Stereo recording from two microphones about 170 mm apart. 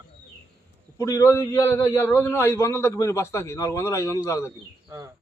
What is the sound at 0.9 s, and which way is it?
A man's voice, 15° left (ahead or behind).